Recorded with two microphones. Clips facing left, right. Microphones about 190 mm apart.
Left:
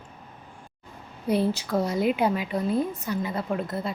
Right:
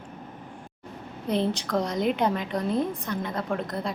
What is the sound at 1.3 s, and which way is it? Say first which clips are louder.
A woman's voice: left 2 dB; 10° left (ahead or behind).